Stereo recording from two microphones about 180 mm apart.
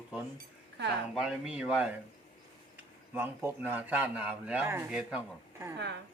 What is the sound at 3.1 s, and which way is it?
Speech, 10° right (ahead or behind).